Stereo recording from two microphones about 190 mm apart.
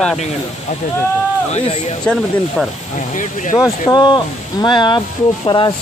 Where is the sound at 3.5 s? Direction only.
15° left (ahead or behind).